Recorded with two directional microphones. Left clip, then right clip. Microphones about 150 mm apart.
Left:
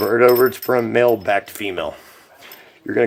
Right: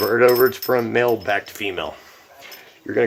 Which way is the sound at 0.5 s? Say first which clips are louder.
Left 2 dB; 45° left (ahead or behind).